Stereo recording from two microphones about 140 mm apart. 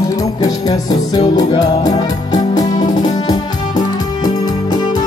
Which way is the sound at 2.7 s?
65° left (ahead or behind).